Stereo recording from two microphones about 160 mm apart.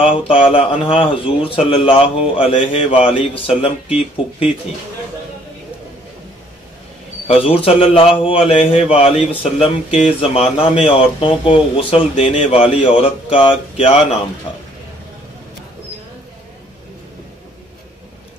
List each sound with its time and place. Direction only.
0.0 s speech: 35° left (ahead or behind)
7.2 s speech: 35° left (ahead or behind)